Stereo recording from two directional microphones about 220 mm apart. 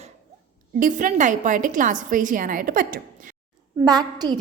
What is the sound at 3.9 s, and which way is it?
Speech, 20° right (ahead or behind).